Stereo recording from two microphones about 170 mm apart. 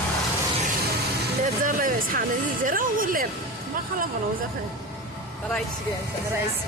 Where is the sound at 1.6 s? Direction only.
55° right (ahead or behind).